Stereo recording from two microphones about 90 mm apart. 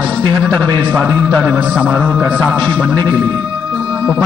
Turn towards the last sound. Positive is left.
turn(degrees=15)  # may be behind; listen again after turning